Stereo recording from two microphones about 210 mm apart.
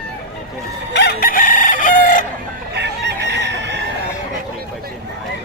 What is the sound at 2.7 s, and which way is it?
Chicken, 55° right (ahead or behind).